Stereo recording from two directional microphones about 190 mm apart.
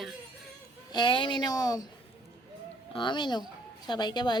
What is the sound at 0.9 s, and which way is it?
Speech, 25° left (ahead or behind).